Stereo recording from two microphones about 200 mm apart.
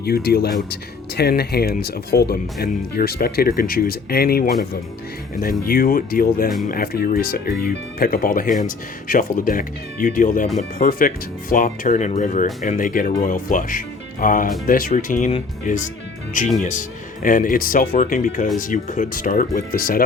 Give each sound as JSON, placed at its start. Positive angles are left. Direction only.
{"t": 0.0, "sound": "speech", "side_deg": 50}
{"t": 17.2, "sound": "speech", "side_deg": 45}